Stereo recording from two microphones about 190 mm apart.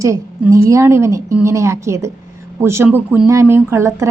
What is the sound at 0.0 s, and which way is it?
A woman's voice, 15° right (ahead or behind).